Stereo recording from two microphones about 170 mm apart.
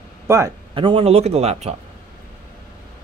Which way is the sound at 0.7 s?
30° right (ahead or behind).